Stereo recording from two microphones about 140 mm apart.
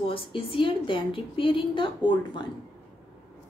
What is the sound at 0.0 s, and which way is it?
A woman's voice, 40° left (ahead or behind).